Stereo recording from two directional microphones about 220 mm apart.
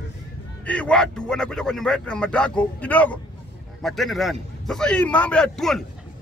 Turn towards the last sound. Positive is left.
turn(degrees=0)  # may be behind; listen again after turning